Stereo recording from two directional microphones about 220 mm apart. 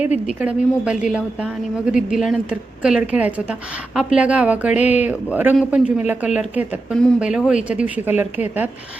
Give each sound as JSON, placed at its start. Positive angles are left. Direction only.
{"t": 0.3, "sound": "speech", "side_deg": -5}